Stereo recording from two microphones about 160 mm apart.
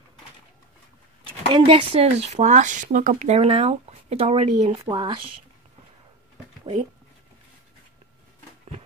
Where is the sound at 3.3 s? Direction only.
40° right (ahead or behind).